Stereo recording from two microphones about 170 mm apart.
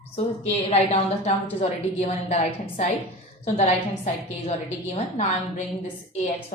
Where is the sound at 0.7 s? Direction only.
35° left (ahead or behind).